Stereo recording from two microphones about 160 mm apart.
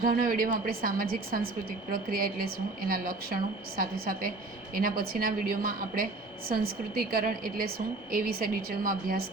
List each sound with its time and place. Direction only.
0.2 s a woman's voice: 60° right (ahead or behind)